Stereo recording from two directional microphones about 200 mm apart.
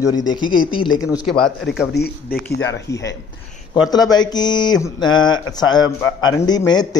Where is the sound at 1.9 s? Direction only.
50° left (ahead or behind).